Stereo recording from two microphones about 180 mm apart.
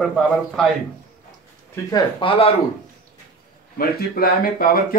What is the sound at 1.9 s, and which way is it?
Speech, 25° left (ahead or behind).